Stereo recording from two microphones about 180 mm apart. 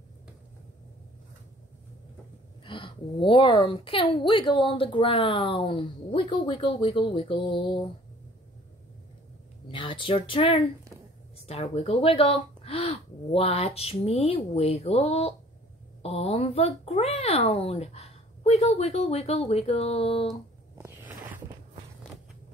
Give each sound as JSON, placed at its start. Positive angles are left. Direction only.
{"t": 2.6, "sound": "a woman's voice", "side_deg": 30}
{"t": 9.7, "sound": "a woman's voice", "side_deg": 30}
{"t": 20.7, "sound": "zipper", "side_deg": -15}